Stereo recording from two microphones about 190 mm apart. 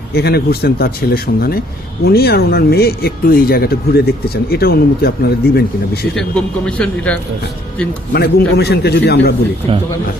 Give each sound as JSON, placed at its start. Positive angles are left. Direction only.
{"t": 0.1, "sound": "speech", "side_deg": 55}
{"t": 6.1, "sound": "a man's voice", "side_deg": 5}
{"t": 8.1, "sound": "speech", "side_deg": 55}